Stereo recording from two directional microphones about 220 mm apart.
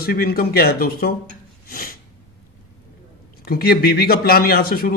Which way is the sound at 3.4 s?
45° left (ahead or behind).